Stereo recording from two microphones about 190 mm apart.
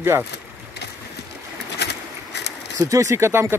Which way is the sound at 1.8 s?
65° left (ahead or behind).